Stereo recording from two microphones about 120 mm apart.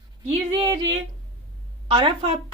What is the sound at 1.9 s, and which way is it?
Speech, 50° right (ahead or behind).